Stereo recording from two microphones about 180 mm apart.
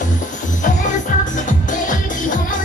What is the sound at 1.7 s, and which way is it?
Music, 45° left (ahead or behind).